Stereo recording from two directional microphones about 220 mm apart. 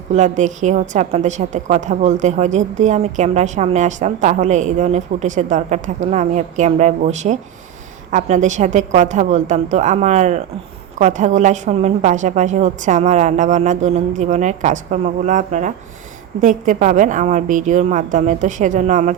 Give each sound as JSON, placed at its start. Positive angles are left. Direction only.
{"t": 0.1, "sound": "a woman's voice", "side_deg": -35}